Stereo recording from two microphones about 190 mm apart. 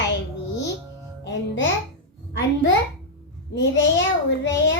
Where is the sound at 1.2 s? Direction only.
70° left (ahead or behind).